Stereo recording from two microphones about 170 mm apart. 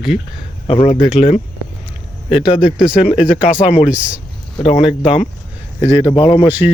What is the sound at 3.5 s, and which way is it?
Speech, 50° left (ahead or behind).